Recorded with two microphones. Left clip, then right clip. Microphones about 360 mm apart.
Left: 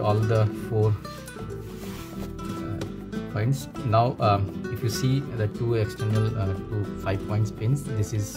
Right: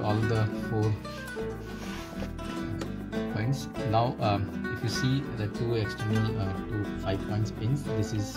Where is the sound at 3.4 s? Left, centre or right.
Centre.